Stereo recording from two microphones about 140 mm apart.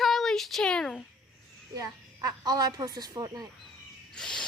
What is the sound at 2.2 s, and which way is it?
Speech, 30° right (ahead or behind).